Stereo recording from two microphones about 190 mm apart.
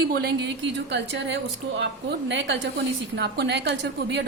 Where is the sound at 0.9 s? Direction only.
70° right (ahead or behind).